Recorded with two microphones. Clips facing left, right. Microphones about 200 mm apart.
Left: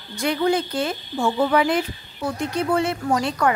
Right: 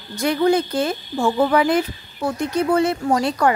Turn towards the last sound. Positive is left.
turn(degrees=-35)  # may be behind; listen again after turning